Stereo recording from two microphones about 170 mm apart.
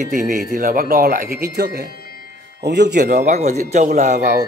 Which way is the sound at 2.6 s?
80° right.